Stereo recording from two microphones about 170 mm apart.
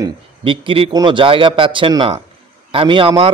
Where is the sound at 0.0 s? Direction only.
30° right (ahead or behind).